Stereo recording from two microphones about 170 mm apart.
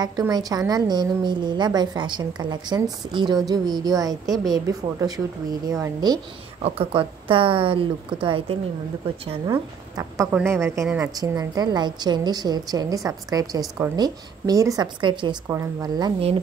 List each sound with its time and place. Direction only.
0.0 s a woman's voice: 25° right (ahead or behind)
6.6 s a woman's voice: 30° right (ahead or behind)
9.5 s a woman's voice: 20° right (ahead or behind)